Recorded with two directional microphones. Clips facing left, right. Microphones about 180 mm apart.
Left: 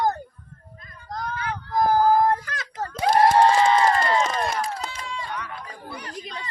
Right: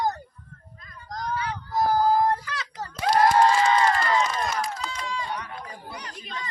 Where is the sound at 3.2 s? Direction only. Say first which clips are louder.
Left 2 dB; 30° left (ahead or behind).